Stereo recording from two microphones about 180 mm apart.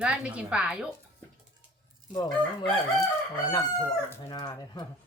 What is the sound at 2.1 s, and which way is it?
Speech, 25° left (ahead or behind).